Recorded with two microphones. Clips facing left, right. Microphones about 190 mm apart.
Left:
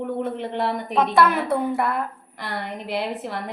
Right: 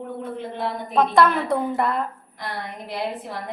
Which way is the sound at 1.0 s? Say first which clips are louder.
Right 1 dB; 5° left (ahead or behind).